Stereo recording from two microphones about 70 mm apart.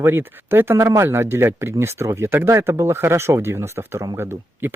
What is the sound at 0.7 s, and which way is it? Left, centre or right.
Speech, right.